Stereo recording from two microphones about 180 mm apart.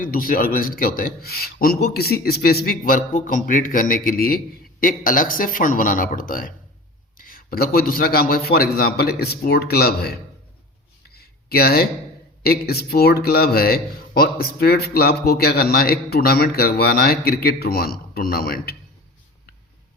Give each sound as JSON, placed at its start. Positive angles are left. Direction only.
{"t": 0.0, "sound": "a man's voice", "side_deg": 50}
{"t": 11.1, "sound": "a sound", "side_deg": 60}
{"t": 12.4, "sound": "speech", "side_deg": 60}